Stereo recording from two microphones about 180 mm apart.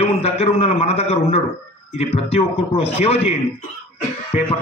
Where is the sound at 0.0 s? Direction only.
35° left (ahead or behind).